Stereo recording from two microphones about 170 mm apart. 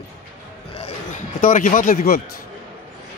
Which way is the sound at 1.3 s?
50° left (ahead or behind).